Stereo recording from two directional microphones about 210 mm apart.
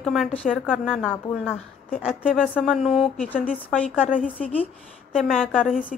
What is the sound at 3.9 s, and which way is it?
A woman's voice, 5° right (ahead or behind).